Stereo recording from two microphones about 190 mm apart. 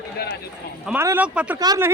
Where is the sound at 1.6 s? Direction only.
20° right (ahead or behind).